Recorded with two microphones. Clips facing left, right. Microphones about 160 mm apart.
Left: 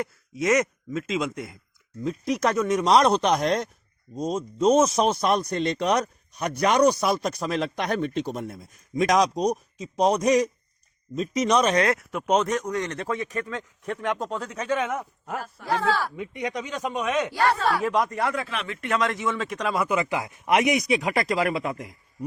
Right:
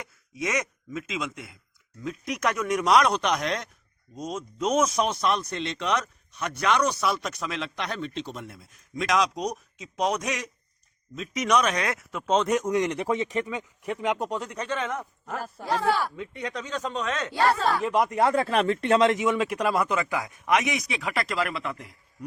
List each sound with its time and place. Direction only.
1.0 s speech: 35° left (ahead or behind)
12.1 s a man's voice: 15° left (ahead or behind)
12.5 s a man's voice: 15° right (ahead or behind)
14.3 s a man's voice: centre (ahead or behind)
15.6 s speech: 20° right (ahead or behind)
16.1 s a man's voice: 15° left (ahead or behind)
17.9 s a man's voice: 10° right (ahead or behind)
18.2 s speech: 30° right (ahead or behind)
18.4 s speech: 40° right (ahead or behind); by 19.9 s centre (ahead or behind)
19.9 s speech: 20° left (ahead or behind); by 21.8 s 40° left (ahead or behind)